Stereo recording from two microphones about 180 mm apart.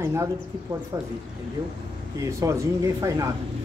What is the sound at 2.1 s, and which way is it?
Speech, 15° right (ahead or behind).